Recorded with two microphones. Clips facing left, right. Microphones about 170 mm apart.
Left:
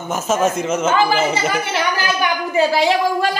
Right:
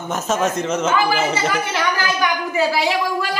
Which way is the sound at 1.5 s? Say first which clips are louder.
Left 1 dB; 20° left (ahead or behind).